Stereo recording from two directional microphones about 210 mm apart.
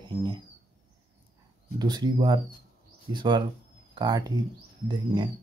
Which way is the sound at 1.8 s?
20° right (ahead or behind).